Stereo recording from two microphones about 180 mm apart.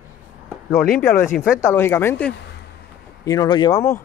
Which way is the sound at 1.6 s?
15° left (ahead or behind).